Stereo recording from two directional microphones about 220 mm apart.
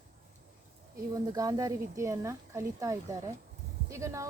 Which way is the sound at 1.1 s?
15° right (ahead or behind).